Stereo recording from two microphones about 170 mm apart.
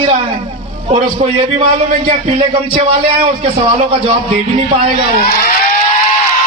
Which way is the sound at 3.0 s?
30° right (ahead or behind).